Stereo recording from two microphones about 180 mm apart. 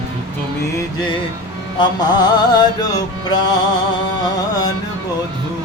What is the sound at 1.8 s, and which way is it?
Music, 25° left (ahead or behind).